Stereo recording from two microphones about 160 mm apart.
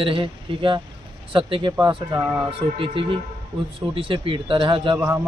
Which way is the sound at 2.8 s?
35° right (ahead or behind).